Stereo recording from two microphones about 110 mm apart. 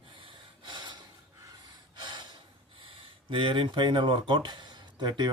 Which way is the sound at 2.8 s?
50° right (ahead or behind).